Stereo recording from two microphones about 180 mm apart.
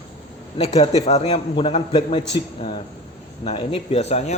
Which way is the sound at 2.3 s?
30° left (ahead or behind).